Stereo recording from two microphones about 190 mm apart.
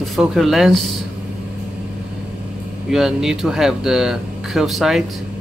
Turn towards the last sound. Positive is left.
turn(degrees=0)  # may be behind; listen again after turning